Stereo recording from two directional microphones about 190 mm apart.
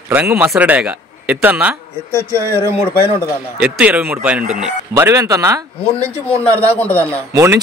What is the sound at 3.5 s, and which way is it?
Speech, 5° right (ahead or behind).